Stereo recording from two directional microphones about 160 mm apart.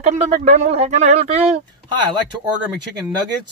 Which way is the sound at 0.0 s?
45° right (ahead or behind).